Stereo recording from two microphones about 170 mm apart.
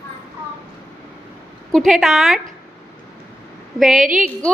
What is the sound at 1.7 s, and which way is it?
Speech, centre (ahead or behind).